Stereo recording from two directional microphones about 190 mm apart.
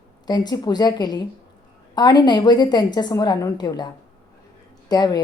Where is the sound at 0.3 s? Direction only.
20° left (ahead or behind).